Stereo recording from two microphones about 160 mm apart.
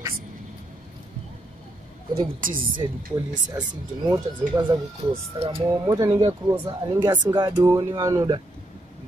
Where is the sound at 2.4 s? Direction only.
60° right (ahead or behind).